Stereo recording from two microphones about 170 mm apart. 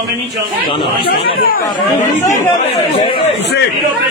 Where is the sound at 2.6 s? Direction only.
35° left (ahead or behind).